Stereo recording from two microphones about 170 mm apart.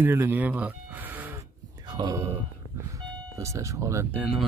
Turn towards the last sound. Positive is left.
turn(degrees=-5)  # may be behind; listen again after turning